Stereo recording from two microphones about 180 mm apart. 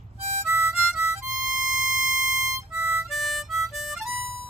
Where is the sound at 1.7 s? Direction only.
Centre (ahead or behind).